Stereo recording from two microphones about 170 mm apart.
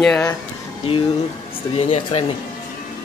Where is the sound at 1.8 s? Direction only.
35° left (ahead or behind).